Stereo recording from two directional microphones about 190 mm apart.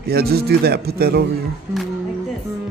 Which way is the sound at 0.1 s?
55° right (ahead or behind).